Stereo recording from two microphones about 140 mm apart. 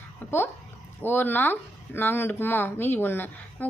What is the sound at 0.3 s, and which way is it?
Speech, 15° left (ahead or behind).